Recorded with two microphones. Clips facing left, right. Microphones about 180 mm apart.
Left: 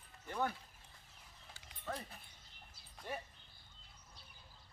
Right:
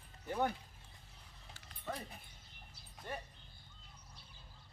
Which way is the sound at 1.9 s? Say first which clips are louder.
Right 1 dB; 10° right (ahead or behind).